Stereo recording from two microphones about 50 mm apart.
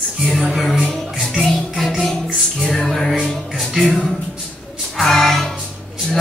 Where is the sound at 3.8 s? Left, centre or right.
Centre.